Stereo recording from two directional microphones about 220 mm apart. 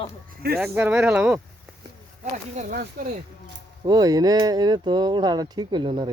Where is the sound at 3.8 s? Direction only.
15° right (ahead or behind).